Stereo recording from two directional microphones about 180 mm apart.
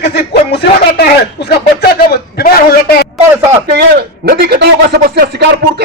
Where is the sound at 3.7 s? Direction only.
65° right (ahead or behind).